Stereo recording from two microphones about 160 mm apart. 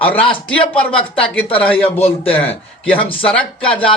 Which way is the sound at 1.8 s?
40° left (ahead or behind).